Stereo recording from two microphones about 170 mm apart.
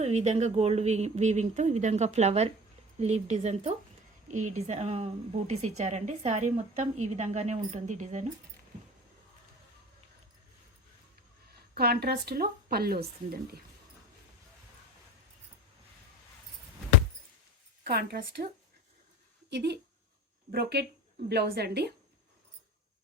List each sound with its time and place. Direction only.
0.0 s a woman's voice: 40° right (ahead or behind)
11.7 s a woman's voice: 65° right (ahead or behind)
17.8 s a woman's voice: 65° right (ahead or behind)
19.5 s a woman's voice: 75° right (ahead or behind)